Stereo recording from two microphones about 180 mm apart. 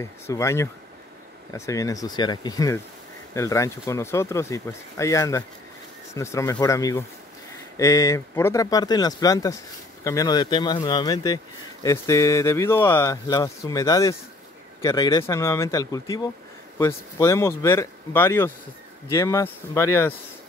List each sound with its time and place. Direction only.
0.0 s speech: 15° left (ahead or behind)